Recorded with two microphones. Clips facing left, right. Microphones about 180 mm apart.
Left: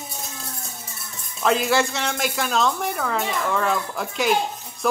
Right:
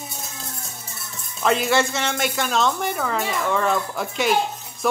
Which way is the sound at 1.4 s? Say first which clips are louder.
Even; centre (ahead or behind).